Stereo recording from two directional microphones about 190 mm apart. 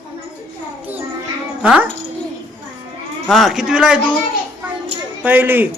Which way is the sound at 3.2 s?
Centre (ahead or behind).